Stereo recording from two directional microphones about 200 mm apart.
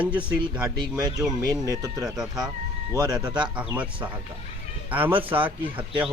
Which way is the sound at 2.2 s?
Centre (ahead or behind).